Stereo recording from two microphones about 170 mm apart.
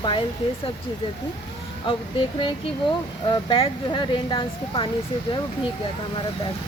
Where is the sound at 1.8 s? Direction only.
30° left (ahead or behind).